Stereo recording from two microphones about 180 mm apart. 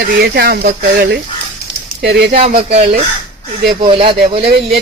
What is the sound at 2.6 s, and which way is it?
Speech, 35° right (ahead or behind).